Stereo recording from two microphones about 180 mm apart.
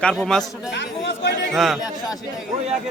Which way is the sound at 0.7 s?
75° left (ahead or behind).